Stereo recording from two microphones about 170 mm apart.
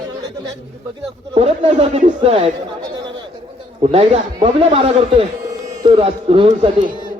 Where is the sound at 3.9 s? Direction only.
35° right (ahead or behind).